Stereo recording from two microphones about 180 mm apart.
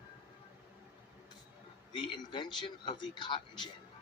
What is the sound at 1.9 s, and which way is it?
Speech, 25° left (ahead or behind).